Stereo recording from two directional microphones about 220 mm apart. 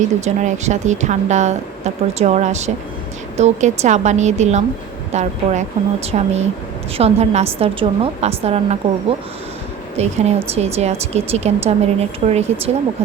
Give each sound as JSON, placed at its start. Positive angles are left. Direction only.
{"t": 0.3, "sound": "a woman's voice", "side_deg": -30}